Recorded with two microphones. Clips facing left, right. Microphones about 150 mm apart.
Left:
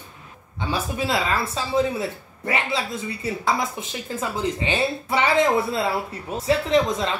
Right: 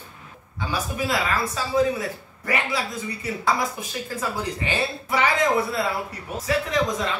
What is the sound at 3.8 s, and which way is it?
Speech, 20° left (ahead or behind).